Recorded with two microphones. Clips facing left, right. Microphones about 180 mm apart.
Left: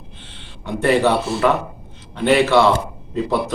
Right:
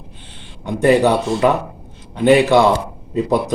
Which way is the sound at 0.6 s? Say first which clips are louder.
Right 3 dB; 15° right (ahead or behind).